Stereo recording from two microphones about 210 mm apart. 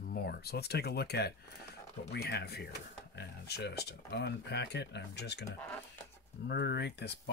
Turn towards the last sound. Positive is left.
turn(degrees=55)  # may be behind; listen again after turning